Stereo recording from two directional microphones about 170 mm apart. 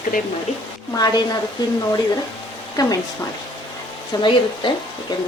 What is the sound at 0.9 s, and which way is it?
Speech, 20° left (ahead or behind).